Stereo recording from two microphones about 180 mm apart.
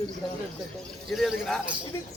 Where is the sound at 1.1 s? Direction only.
Centre (ahead or behind).